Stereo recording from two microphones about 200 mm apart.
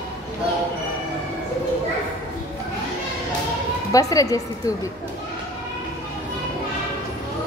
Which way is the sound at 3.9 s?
15° left (ahead or behind).